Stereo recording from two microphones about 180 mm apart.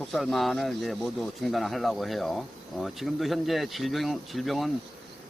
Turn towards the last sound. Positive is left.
turn(degrees=0)  # may be behind; listen again after turning